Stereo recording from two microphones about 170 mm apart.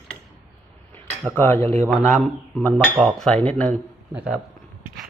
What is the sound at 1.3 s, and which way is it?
A man's voice, 15° left (ahead or behind).